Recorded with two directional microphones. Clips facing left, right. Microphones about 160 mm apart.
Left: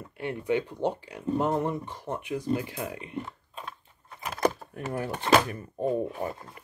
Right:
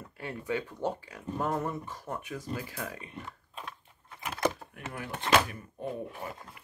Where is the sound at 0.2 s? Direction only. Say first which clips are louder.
Left 6 dB; 20° left (ahead or behind).